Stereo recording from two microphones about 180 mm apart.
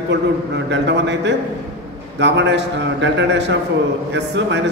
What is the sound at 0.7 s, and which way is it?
A man's voice, 75° right (ahead or behind).